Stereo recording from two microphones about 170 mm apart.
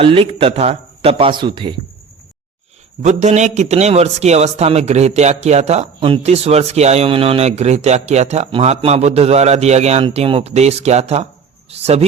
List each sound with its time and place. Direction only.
0.0 s a man's voice: 35° right (ahead or behind)
3.0 s a man's voice: 45° right (ahead or behind)